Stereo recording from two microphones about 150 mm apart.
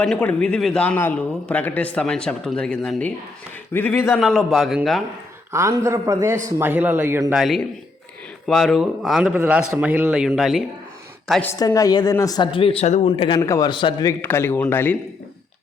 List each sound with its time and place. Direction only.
0.0 s a man's voice: 5° left (ahead or behind)
3.7 s a man's voice: 15° left (ahead or behind)
4.2 s a man's voice: centre (ahead or behind)
5.5 s a man's voice: 20° right (ahead or behind)
7.3 s a man's voice: centre (ahead or behind)
11.6 s speech: 25° left (ahead or behind)
13.4 s a man's voice: 25° left (ahead or behind)
14.1 s a man's voice: 15° left (ahead or behind)